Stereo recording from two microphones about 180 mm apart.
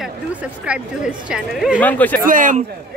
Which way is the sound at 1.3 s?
5° right (ahead or behind).